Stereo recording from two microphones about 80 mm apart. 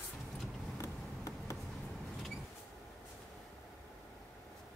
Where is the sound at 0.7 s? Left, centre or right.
Left.